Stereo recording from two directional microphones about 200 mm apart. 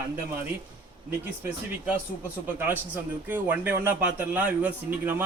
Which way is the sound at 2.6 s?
10° right (ahead or behind).